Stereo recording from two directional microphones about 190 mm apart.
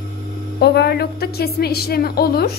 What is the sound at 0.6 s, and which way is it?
A woman's voice, 55° left (ahead or behind).